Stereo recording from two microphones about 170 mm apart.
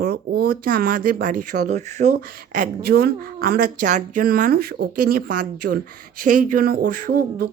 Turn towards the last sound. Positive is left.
turn(degrees=-60)  # may be behind; listen again after turning